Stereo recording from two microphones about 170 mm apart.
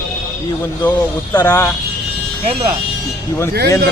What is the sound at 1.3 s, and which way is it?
Speech, 15° left (ahead or behind).